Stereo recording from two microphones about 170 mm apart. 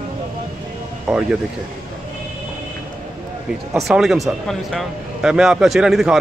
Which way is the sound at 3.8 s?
Centre (ahead or behind).